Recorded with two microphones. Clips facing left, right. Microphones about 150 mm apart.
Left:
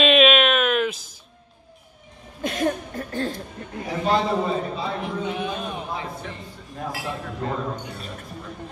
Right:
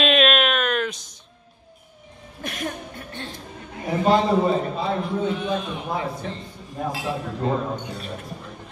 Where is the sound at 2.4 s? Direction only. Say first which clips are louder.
Left 6 dB; 30° left (ahead or behind).